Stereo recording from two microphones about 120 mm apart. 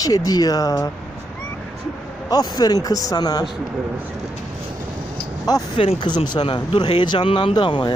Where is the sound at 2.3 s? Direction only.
35° left (ahead or behind).